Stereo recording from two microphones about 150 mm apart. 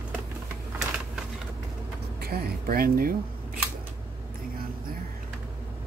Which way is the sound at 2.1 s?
90° right.